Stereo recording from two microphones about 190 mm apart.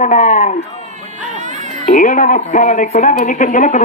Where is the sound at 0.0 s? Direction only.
40° left (ahead or behind).